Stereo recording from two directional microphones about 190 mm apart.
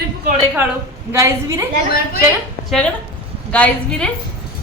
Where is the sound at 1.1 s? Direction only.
15° right (ahead or behind).